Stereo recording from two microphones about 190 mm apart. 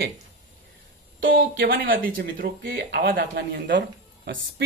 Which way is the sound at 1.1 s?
80° right.